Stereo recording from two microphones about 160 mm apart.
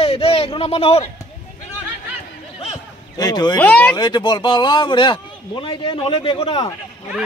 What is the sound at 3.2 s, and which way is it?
Speech, 25° left (ahead or behind).